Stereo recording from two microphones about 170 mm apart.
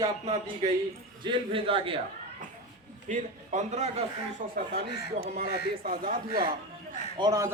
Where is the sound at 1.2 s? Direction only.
30° right (ahead or behind).